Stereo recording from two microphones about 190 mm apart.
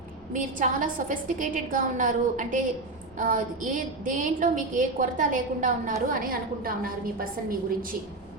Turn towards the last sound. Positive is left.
turn(degrees=-50)  # may be behind; listen again after turning